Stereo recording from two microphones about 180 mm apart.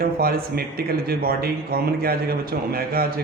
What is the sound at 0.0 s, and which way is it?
Speech, 55° right (ahead or behind).